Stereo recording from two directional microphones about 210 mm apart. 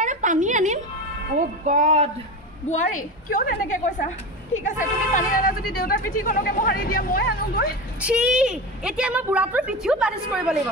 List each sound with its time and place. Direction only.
0.0 s a sound: 35° right (ahead or behind)
1.3 s speech: 35° right (ahead or behind)
2.7 s a woman's voice: 40° left (ahead or behind)
8.0 s a woman's voice: 5° right (ahead or behind)